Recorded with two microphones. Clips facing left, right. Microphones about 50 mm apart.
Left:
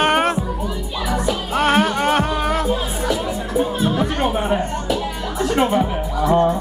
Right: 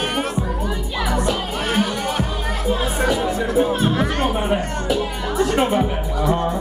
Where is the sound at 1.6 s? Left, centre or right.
Left.